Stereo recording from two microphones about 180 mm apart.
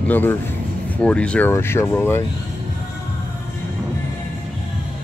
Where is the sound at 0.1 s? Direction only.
10° left (ahead or behind).